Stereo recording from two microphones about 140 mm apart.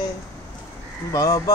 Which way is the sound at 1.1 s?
25° left (ahead or behind).